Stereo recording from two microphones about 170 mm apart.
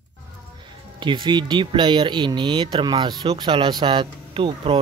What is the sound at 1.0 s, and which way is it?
Speech, 25° right (ahead or behind).